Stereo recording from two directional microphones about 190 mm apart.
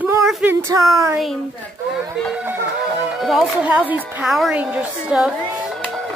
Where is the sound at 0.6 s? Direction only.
15° right (ahead or behind).